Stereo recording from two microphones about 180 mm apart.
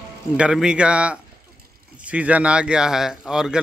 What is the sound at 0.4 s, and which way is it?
Speech, 5° right (ahead or behind).